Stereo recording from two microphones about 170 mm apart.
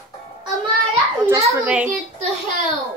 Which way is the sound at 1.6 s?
10° right (ahead or behind).